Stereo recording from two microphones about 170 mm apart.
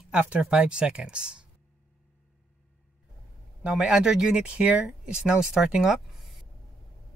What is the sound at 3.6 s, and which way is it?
Speech, 5° right (ahead or behind).